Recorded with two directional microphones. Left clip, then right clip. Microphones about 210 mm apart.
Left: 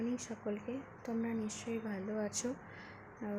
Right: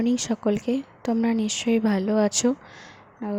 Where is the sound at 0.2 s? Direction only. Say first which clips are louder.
Right 16 dB; 45° right (ahead or behind).